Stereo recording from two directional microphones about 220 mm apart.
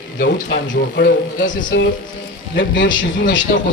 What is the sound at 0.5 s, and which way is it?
Speech, 45° left (ahead or behind).